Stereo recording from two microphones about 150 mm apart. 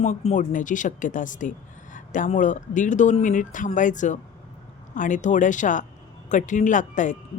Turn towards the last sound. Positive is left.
turn(degrees=55)  # may be behind; listen again after turning